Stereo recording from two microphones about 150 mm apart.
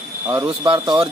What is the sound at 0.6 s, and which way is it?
Speech, 30° right (ahead or behind).